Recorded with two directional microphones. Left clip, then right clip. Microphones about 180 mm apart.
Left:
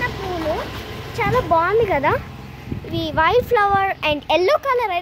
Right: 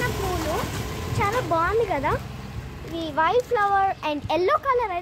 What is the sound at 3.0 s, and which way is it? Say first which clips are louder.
A child's voice: left 5 dB; 45° left (ahead or behind).